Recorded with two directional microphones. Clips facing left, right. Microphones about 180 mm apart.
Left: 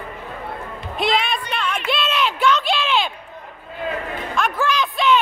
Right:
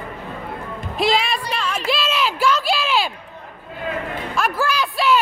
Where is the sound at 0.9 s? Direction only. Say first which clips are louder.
Right 1 dB; centre (ahead or behind).